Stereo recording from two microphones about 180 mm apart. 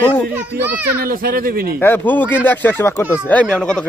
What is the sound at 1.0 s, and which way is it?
Speech, 55° right (ahead or behind).